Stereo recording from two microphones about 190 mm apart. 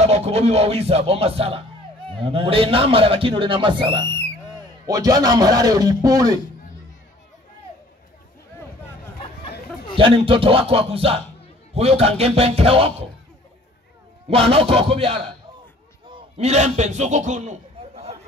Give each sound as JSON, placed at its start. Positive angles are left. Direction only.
{"t": 0.0, "sound": "a man's voice", "side_deg": -35}
{"t": 9.9, "sound": "a man's voice", "side_deg": -30}
{"t": 14.3, "sound": "a man's voice", "side_deg": -30}